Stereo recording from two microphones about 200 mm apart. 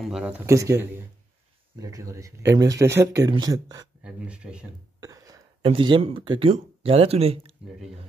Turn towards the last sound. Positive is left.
turn(degrees=-30)  # may be behind; listen again after turning